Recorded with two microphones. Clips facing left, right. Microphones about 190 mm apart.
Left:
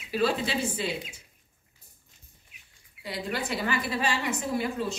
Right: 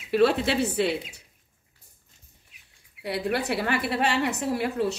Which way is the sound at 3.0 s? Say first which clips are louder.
Right 5 dB; 65° right (ahead or behind).